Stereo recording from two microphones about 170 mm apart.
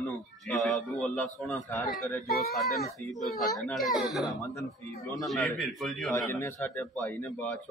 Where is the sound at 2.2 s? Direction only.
60° left (ahead or behind).